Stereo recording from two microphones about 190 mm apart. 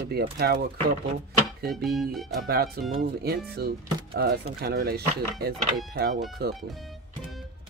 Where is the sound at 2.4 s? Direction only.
50° right (ahead or behind).